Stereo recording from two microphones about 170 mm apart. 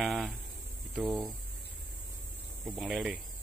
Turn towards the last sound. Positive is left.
turn(degrees=-5)  # may be behind; listen again after turning